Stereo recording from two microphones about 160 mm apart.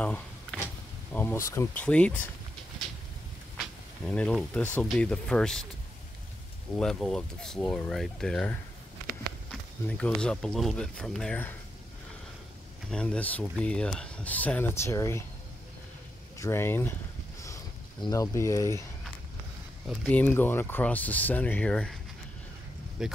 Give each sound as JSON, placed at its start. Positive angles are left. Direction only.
{"t": 0.0, "sound": "a sound", "side_deg": 10}
{"t": 1.1, "sound": "speech", "side_deg": 15}
{"t": 4.0, "sound": "speech", "side_deg": 5}
{"t": 6.8, "sound": "speech", "side_deg": 5}
{"t": 12.9, "sound": "speech", "side_deg": 5}
{"t": 16.3, "sound": "speech", "side_deg": 15}
{"t": 18.0, "sound": "speech", "side_deg": 20}
{"t": 20.1, "sound": "speech", "side_deg": 10}
{"t": 23.0, "sound": "speech", "side_deg": -5}